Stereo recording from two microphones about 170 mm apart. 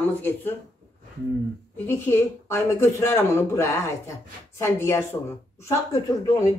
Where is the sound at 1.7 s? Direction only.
15° left (ahead or behind).